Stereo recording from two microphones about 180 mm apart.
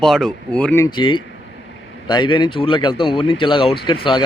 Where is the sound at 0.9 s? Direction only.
25° left (ahead or behind).